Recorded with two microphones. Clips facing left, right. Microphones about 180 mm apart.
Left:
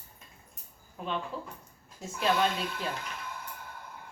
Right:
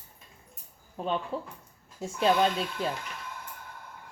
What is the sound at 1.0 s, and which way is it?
Speech, 30° right (ahead or behind).